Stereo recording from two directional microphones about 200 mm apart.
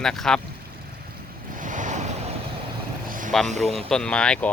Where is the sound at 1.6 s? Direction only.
40° right (ahead or behind).